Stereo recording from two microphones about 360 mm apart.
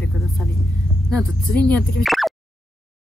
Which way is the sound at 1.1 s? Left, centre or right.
Centre.